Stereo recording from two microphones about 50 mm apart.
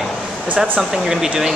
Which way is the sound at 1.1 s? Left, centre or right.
Centre.